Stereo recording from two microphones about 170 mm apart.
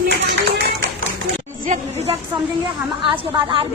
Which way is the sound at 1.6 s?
40° right (ahead or behind).